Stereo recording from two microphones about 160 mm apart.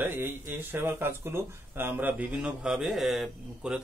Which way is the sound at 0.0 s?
15° right (ahead or behind).